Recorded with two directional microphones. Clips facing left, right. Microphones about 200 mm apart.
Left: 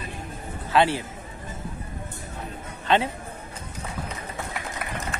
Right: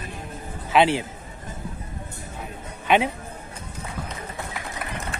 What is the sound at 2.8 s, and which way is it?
Speech, 15° right (ahead or behind).